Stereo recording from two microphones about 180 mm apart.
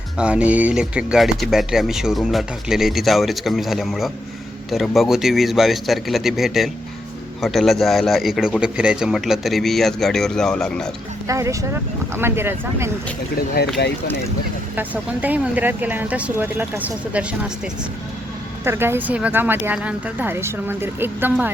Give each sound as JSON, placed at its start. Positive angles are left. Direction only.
{"t": 0.2, "sound": "speech", "side_deg": -5}
{"t": 11.3, "sound": "speech", "side_deg": -15}
{"t": 13.3, "sound": "speech", "side_deg": 60}
{"t": 14.8, "sound": "speech", "side_deg": -10}
{"t": 18.6, "sound": "speech", "side_deg": -15}